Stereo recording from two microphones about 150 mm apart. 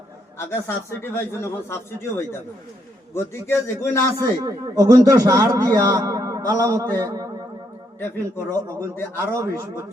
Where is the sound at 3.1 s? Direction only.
15° left (ahead or behind).